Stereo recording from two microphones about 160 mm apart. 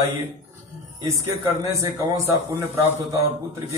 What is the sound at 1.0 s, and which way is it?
A man's voice, 20° right (ahead or behind).